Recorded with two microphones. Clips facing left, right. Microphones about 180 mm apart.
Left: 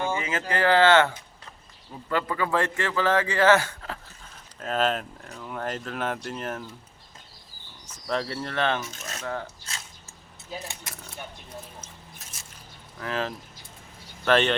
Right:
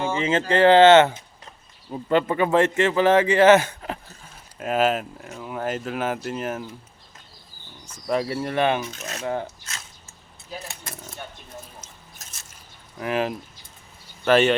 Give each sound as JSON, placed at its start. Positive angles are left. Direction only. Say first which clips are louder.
{"t": 0.2, "sound": "a man's voice", "louder": "right 8 dB", "side_deg": -25}
{"t": 4.6, "sound": "speech", "louder": "right 4 dB", "side_deg": -10}
{"t": 7.9, "sound": "a man's voice", "louder": "right 5 dB", "side_deg": -10}
{"t": 13.0, "sound": "speech", "louder": "right 5 dB", "side_deg": -15}